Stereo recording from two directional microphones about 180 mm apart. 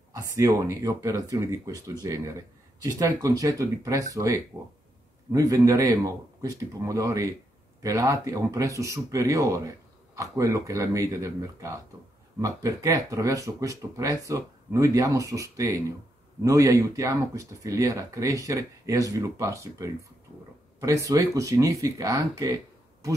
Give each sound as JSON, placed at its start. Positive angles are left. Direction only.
{"t": 0.1, "sound": "speech", "side_deg": -20}